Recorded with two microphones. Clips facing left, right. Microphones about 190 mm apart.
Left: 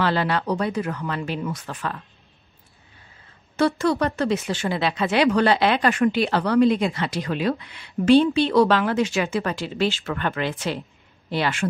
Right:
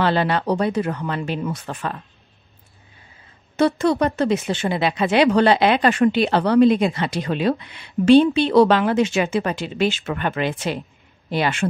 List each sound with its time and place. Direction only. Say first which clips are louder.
0.0 s speech: right 3 dB; 25° right (ahead or behind)
3.5 s speech: right 3 dB; 20° right (ahead or behind)